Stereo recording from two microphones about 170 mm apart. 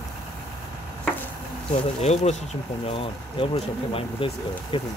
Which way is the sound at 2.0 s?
40° left (ahead or behind).